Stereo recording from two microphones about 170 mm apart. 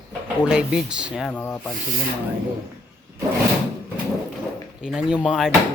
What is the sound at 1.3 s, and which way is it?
Rub, 10° left (ahead or behind).